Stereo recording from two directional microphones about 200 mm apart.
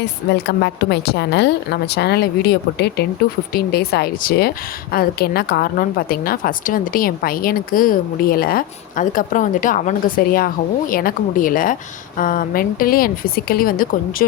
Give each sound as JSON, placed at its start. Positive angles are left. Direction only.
{"t": 0.0, "sound": "a woman's voice", "side_deg": 55}